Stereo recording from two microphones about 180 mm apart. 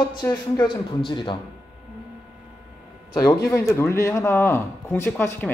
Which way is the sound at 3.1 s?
20° left (ahead or behind).